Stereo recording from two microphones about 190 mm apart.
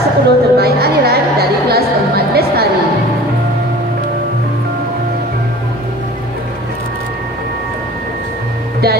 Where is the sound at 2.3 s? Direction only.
55° right (ahead or behind).